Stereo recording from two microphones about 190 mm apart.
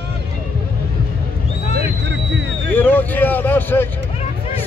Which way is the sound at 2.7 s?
10° left (ahead or behind).